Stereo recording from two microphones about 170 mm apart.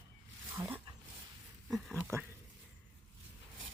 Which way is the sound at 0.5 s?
20° right (ahead or behind).